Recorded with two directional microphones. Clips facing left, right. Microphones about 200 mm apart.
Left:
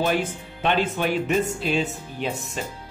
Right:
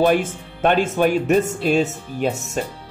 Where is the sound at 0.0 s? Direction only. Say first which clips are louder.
Right 6 dB; 50° right (ahead or behind).